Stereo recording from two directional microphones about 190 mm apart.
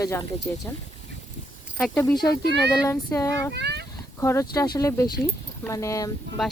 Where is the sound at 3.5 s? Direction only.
60° right (ahead or behind).